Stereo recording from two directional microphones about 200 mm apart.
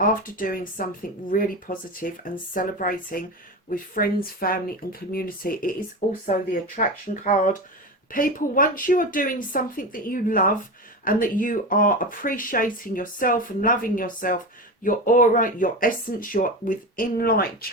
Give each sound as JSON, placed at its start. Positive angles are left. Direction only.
{"t": 0.0, "sound": "speech", "side_deg": 45}